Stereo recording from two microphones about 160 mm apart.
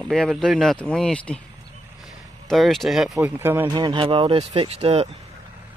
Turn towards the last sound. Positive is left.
turn(degrees=-40)  # may be behind; listen again after turning